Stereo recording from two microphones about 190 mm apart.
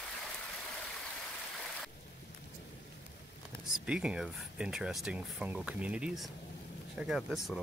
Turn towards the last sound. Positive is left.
turn(degrees=0)  # may be behind; listen again after turning